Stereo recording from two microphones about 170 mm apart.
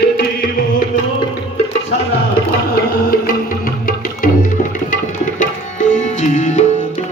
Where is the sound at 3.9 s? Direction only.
55° left (ahead or behind).